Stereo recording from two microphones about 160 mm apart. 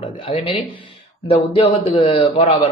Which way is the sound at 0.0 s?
35° left (ahead or behind).